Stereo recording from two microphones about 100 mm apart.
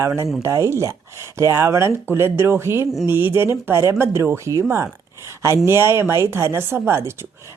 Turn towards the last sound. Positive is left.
turn(degrees=-25)  # may be behind; listen again after turning